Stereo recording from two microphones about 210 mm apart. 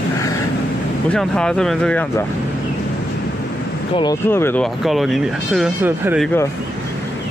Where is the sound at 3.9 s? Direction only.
20° left (ahead or behind).